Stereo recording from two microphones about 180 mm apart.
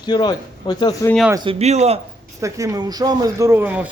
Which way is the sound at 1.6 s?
35° right (ahead or behind).